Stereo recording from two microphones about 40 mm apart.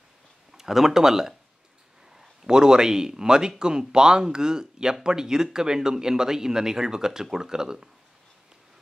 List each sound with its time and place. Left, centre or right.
0.5 s speech: centre
2.4 s speech: centre